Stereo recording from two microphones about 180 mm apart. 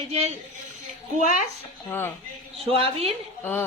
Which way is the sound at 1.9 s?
10° left (ahead or behind).